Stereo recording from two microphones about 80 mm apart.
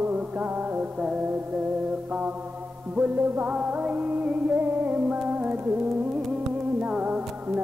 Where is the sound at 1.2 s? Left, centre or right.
Right.